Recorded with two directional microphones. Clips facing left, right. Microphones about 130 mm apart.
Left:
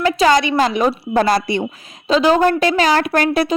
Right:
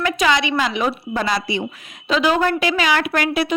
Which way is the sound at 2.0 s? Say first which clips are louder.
Left 4 dB; 35° left (ahead or behind).